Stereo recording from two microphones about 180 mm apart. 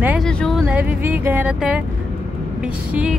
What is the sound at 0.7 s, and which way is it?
Music, 5° right (ahead or behind).